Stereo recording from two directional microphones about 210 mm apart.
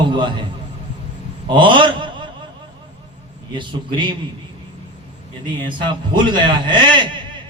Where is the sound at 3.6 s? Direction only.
25° right (ahead or behind).